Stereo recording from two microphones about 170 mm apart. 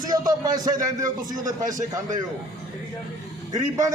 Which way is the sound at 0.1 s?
20° right (ahead or behind).